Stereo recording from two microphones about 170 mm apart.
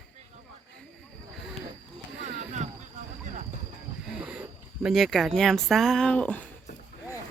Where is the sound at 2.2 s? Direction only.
45° right (ahead or behind).